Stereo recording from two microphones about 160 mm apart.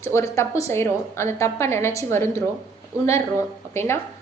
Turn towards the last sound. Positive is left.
turn(degrees=15)  # may be behind; listen again after turning